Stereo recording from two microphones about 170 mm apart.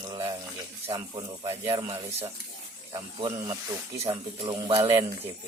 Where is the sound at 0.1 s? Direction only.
25° right (ahead or behind).